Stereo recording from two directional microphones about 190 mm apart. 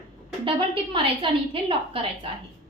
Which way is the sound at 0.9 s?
25° right (ahead or behind).